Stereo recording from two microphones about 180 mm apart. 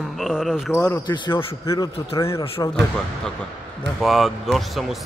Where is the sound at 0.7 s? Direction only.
15° left (ahead or behind).